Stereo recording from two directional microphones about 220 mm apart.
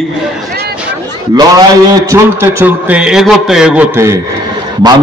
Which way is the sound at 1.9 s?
15° right (ahead or behind).